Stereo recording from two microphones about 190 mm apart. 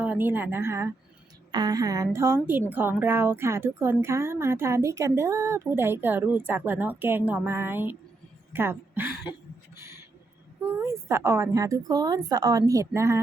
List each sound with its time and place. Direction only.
0.0 s a woman's voice: 10° right (ahead or behind)
9.7 s a sound: 15° right (ahead or behind)
10.8 s a woman's voice: 15° right (ahead or behind)